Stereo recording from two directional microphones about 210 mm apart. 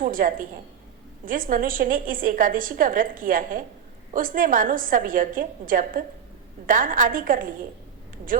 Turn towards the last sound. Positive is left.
turn(degrees=-40)  # may be behind; listen again after turning